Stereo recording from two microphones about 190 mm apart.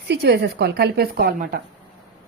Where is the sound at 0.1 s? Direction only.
60° right (ahead or behind).